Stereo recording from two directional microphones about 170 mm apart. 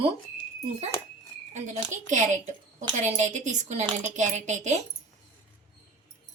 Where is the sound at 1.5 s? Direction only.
45° right (ahead or behind).